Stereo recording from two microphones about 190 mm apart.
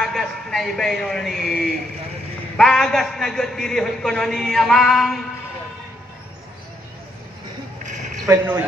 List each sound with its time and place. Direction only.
0.0 s a man's voice: centre (ahead or behind)
7.8 s a sound: 40° right (ahead or behind)
8.3 s speech: 10° right (ahead or behind)